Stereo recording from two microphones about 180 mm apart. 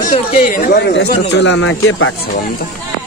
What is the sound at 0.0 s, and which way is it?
Speech, 50° left (ahead or behind).